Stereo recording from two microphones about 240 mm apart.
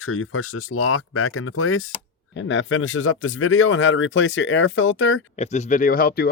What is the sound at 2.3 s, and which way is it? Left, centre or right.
Speech, left.